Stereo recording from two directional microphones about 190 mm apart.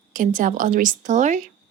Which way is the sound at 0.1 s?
45° right (ahead or behind).